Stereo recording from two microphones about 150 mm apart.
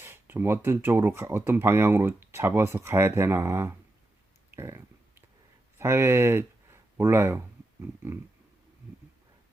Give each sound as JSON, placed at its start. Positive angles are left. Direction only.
{"t": 0.0, "sound": "speech", "side_deg": -15}
{"t": 4.5, "sound": "a sound", "side_deg": -15}
{"t": 5.7, "sound": "speech", "side_deg": -15}